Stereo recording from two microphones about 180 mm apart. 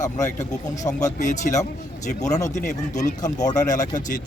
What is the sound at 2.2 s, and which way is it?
Speech, 20° left (ahead or behind).